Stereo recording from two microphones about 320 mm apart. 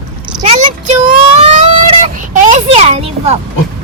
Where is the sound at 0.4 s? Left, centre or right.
Right.